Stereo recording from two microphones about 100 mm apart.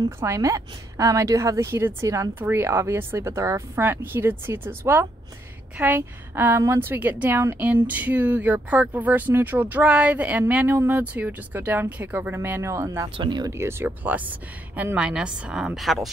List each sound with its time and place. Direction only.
0.2 s a woman's voice: 30° right (ahead or behind)
13.2 s speech: 45° right (ahead or behind)
13.5 s speech: 25° right (ahead or behind); by 16.1 s centre (ahead or behind)